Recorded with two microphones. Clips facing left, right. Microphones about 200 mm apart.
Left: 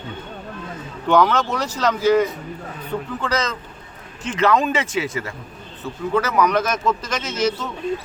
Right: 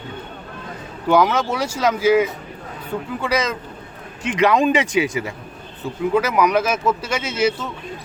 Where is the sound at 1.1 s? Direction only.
10° right (ahead or behind).